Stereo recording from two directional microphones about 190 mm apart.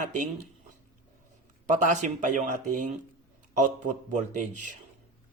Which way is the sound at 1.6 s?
40° right (ahead or behind).